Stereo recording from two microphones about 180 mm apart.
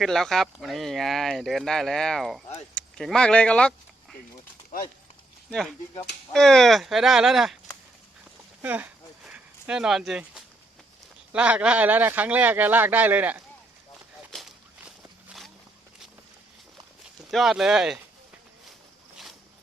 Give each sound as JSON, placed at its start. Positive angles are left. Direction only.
{"t": 0.0, "sound": "speech", "side_deg": 0}
{"t": 5.5, "sound": "speech", "side_deg": 5}
{"t": 8.6, "sound": "a sound", "side_deg": -10}
{"t": 11.3, "sound": "speech", "side_deg": -5}
{"t": 14.8, "sound": "a sound", "side_deg": 0}
{"t": 17.3, "sound": "speech", "side_deg": 0}